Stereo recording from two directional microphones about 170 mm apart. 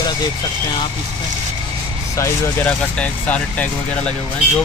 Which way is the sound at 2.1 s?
15° left (ahead or behind).